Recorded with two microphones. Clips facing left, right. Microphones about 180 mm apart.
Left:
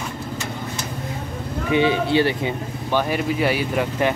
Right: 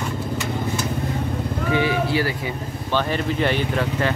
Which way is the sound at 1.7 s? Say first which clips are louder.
Left 3 dB; 25° left (ahead or behind).